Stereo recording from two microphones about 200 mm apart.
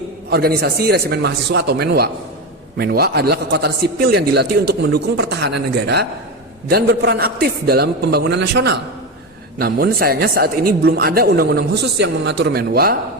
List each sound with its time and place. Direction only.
0.3 s a man's voice: 55° right (ahead or behind)